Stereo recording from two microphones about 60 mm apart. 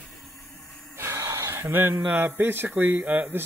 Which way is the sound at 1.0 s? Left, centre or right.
Right.